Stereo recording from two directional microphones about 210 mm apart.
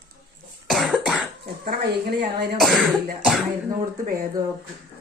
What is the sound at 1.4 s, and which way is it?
Speech, 50° right (ahead or behind).